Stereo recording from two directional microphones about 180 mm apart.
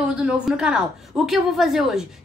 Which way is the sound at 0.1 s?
5° right (ahead or behind).